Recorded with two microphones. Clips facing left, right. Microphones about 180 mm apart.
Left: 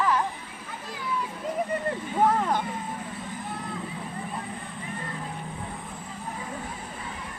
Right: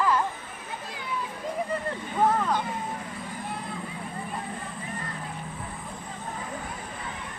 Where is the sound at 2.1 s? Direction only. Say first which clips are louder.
Even; 25° left (ahead or behind).